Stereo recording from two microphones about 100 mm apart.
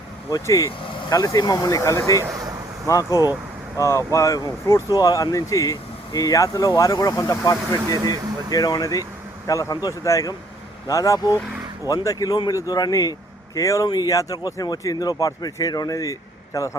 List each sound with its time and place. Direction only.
0.3 s speech: 35° left (ahead or behind)
0.8 s vehicle: 55° left (ahead or behind)
1.2 s speech: 40° left (ahead or behind)
2.2 s a sound: 35° right (ahead or behind)
2.8 s speech: 35° left (ahead or behind)